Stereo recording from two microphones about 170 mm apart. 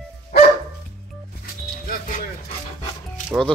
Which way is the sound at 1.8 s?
55° left (ahead or behind).